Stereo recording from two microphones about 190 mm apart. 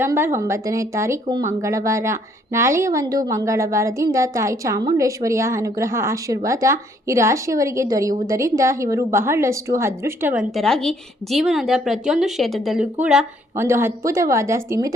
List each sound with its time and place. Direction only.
0.0 s a woman's voice: 10° right (ahead or behind)
10.5 s a woman's voice: centre (ahead or behind); by 14.9 s 15° right (ahead or behind)